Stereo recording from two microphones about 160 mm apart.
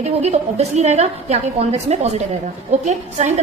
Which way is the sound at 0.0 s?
45° right (ahead or behind).